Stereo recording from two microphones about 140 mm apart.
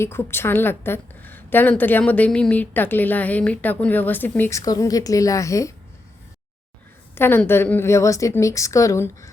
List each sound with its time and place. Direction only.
0.0 s a woman's voice: 15° left (ahead or behind)
7.2 s a woman's voice: 15° left (ahead or behind)